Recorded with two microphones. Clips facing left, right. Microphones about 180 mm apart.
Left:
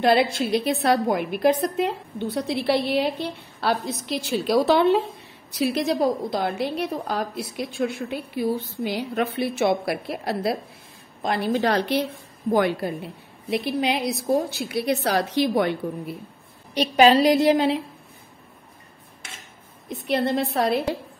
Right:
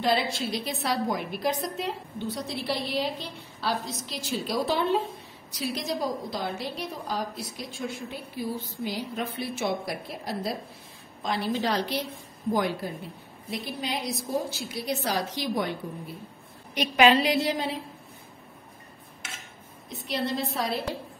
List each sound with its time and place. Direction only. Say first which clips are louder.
0.0 s a woman's voice: left 7 dB; 65° left (ahead or behind)
11.2 s a woman's voice: left 5 dB; 55° left (ahead or behind)
16.7 s a woman's voice: left 4 dB; 35° left (ahead or behind)
17.5 s a woman's voice: left 10 dB; 70° left (ahead or behind)
19.9 s a woman's voice: left 7 dB; 55° left (ahead or behind)